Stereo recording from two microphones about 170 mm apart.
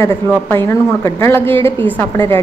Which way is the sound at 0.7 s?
15° left (ahead or behind).